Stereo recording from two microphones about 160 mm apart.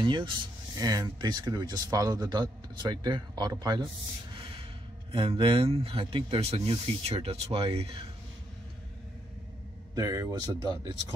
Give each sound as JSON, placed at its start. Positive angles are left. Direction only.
{"t": 0.0, "sound": "speech", "side_deg": -30}
{"t": 5.1, "sound": "speech", "side_deg": -35}
{"t": 9.9, "sound": "speech", "side_deg": -20}